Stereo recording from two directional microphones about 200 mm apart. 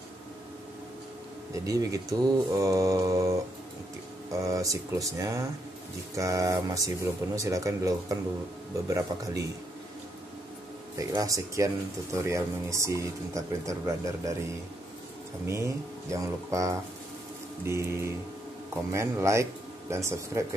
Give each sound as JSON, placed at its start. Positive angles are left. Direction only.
{"t": 1.5, "sound": "speech", "side_deg": -15}
{"t": 11.0, "sound": "speech", "side_deg": -15}
{"t": 15.4, "sound": "speech", "side_deg": -15}